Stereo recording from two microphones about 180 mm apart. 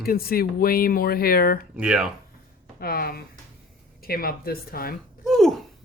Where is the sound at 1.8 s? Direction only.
5° right (ahead or behind).